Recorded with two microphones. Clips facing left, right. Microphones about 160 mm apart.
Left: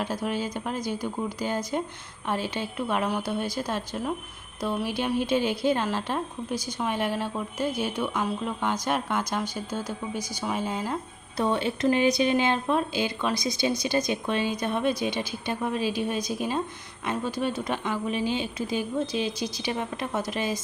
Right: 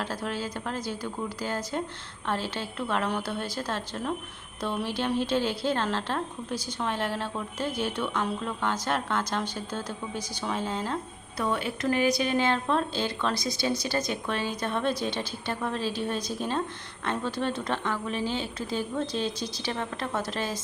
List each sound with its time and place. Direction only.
0.0 s a woman's voice: 15° left (ahead or behind)
11.3 s a woman's voice: 25° left (ahead or behind)